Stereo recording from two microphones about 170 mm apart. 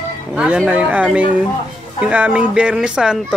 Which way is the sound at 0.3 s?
5° right (ahead or behind).